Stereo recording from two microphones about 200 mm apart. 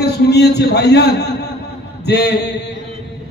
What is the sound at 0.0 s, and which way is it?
A man's voice, 55° left (ahead or behind).